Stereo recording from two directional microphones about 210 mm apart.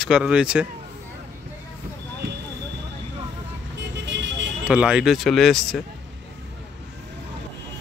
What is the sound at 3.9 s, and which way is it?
Vehicle, 55° right (ahead or behind).